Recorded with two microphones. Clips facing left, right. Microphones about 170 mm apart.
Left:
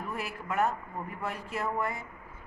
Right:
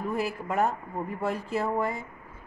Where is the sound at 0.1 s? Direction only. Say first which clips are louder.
Right 5 dB; 35° right (ahead or behind).